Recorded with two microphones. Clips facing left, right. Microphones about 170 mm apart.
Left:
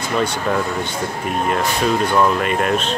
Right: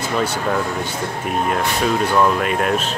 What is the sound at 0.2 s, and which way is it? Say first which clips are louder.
Speech: left 1 dB; 5° right (ahead or behind).